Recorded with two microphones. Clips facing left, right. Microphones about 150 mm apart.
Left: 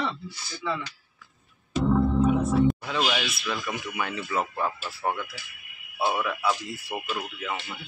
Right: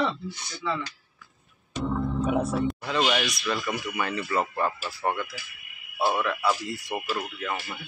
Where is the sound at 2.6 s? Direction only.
Centre (ahead or behind).